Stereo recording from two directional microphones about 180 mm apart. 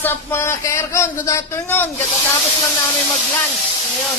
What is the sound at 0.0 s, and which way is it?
Speech, 15° left (ahead or behind).